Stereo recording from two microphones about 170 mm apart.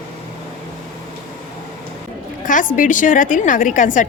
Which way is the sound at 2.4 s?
50° left (ahead or behind).